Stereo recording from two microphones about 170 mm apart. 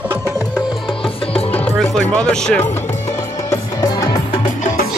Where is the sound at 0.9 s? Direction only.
30° left (ahead or behind).